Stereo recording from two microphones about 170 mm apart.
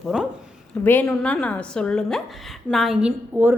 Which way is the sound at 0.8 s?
10° left (ahead or behind).